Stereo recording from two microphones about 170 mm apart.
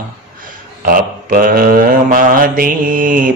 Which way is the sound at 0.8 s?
55° right (ahead or behind).